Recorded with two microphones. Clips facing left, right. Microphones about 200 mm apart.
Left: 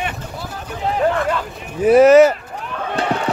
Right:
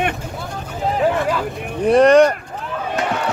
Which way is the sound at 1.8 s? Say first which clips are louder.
Left 2 dB; 5° left (ahead or behind).